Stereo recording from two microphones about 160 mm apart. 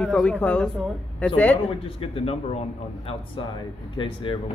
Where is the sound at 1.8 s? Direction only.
35° left (ahead or behind).